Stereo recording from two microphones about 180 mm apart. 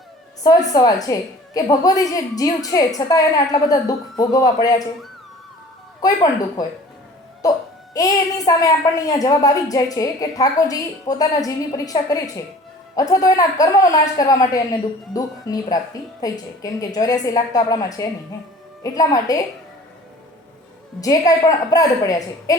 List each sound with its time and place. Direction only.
0.4 s a woman's voice: 20° left (ahead or behind)
6.0 s a woman's voice: 20° left (ahead or behind)
7.9 s a woman's voice: 20° left (ahead or behind)
21.0 s a woman's voice: 20° left (ahead or behind)